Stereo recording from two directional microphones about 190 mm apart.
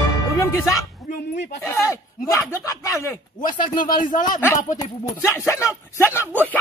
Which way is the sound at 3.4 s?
45° left (ahead or behind).